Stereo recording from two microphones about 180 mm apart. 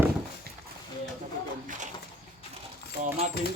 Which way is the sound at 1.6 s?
40° right (ahead or behind).